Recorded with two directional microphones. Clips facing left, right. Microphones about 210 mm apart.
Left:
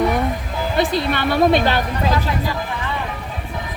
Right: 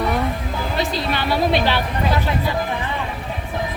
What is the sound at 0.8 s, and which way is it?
A woman's voice, 55° left (ahead or behind).